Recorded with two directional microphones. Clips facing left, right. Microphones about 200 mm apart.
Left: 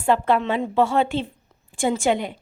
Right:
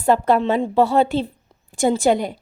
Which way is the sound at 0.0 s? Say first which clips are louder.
Right 3 dB; 40° right (ahead or behind).